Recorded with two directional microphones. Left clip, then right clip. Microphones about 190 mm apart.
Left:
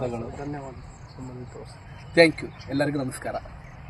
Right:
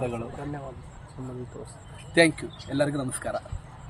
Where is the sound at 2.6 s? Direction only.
10° left (ahead or behind).